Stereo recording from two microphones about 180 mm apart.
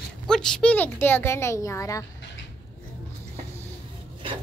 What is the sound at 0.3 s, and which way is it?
A child's voice, 5° left (ahead or behind).